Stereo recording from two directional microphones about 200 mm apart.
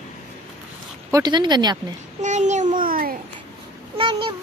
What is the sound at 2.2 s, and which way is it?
Babbling, 35° right (ahead or behind).